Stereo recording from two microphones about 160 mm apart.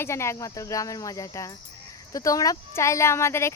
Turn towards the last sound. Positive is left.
turn(degrees=15)  # may be behind; listen again after turning